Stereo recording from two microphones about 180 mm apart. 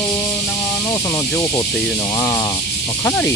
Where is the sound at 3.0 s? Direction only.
10° left (ahead or behind).